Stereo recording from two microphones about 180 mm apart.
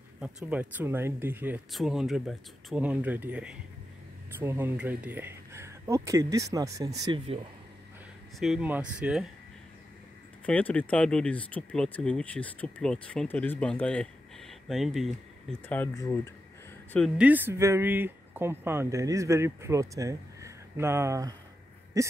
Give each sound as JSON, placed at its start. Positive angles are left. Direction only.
{"t": 0.2, "sound": "speech", "side_deg": -5}
{"t": 8.4, "sound": "speech", "side_deg": -5}
{"t": 10.4, "sound": "speech", "side_deg": 5}
{"t": 15.7, "sound": "speech", "side_deg": 15}
{"t": 17.2, "sound": "speech", "side_deg": -10}